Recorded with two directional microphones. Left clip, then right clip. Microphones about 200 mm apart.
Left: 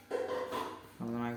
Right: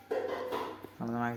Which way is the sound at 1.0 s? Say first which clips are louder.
Right 4 dB; 10° right (ahead or behind).